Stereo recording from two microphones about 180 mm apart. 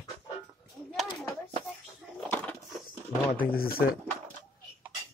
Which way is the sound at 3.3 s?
55° left (ahead or behind).